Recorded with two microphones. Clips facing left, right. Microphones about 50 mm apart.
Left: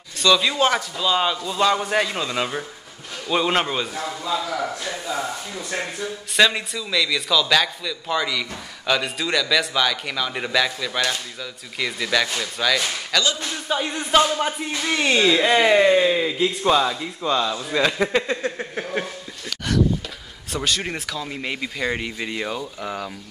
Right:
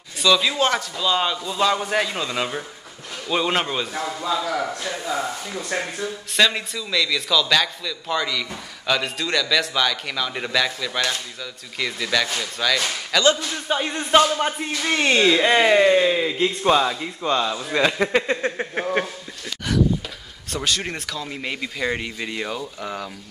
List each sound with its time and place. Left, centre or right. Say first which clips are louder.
0.2 s a man's voice: left 1 dB; centre
4.4 s speech: right 1 dB; centre
6.3 s a man's voice: left 2 dB; centre
13.7 s a man's voice: right 1 dB; centre
18.4 s speech: right 2 dB; right
20.4 s a man's voice: even; centre